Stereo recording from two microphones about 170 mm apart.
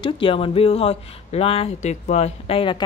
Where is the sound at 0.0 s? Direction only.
30° left (ahead or behind).